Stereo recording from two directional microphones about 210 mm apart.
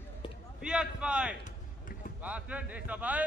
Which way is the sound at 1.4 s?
40° left (ahead or behind).